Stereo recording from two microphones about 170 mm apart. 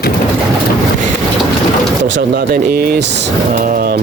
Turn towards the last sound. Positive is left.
turn(degrees=-65)  # may be behind; listen again after turning